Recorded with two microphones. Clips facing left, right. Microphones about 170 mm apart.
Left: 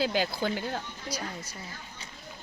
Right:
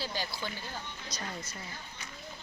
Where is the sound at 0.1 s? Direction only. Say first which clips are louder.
Left 9 dB; 60° left (ahead or behind).